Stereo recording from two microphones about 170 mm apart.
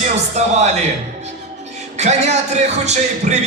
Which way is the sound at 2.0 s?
40° right (ahead or behind).